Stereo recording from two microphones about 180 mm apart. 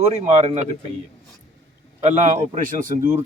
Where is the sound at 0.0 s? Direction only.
40° right (ahead or behind).